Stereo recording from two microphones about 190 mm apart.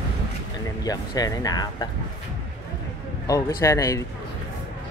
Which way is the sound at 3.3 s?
15° left (ahead or behind).